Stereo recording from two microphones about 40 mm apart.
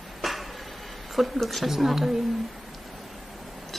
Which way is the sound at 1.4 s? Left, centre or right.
Centre.